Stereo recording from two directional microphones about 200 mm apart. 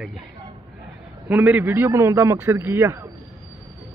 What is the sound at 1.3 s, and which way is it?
A man's voice, 10° right (ahead or behind).